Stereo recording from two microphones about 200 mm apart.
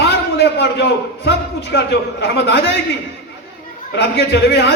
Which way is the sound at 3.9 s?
55° left (ahead or behind).